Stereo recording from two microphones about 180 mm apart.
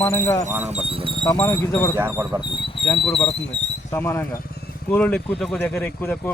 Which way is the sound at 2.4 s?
30° left (ahead or behind).